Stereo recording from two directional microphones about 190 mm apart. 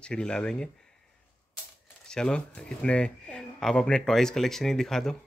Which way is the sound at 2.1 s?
5° left (ahead or behind).